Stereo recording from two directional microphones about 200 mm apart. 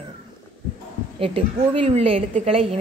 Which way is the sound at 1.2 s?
30° right (ahead or behind).